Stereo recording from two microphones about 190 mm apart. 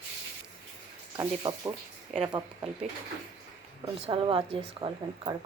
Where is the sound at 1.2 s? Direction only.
20° right (ahead or behind).